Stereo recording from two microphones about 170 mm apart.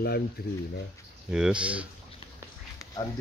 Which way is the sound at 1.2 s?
5° right (ahead or behind).